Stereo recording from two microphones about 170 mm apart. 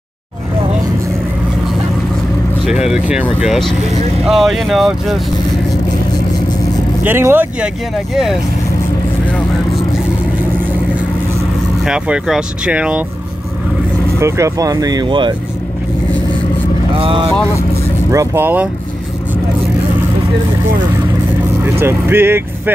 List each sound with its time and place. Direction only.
2.7 s speech: 5° right (ahead or behind)
7.0 s speech: 10° right (ahead or behind)
11.8 s speech: 5° right (ahead or behind)
14.2 s speech: 15° right (ahead or behind)
16.9 s speech: 30° right (ahead or behind)
18.1 s speech: 15° right (ahead or behind)
21.7 s speech: 15° right (ahead or behind)